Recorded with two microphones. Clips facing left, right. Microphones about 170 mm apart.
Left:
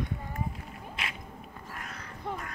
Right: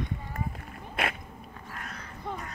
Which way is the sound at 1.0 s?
55° right (ahead or behind).